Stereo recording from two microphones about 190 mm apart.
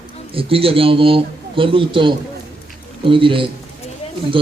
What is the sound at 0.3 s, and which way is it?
Speech, 30° right (ahead or behind).